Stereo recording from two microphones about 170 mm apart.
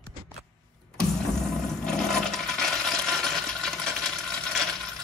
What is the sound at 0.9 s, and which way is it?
Toilet flush, 5° left (ahead or behind).